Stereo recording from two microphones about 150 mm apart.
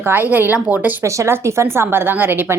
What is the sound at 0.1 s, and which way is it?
A woman's voice, 10° right (ahead or behind).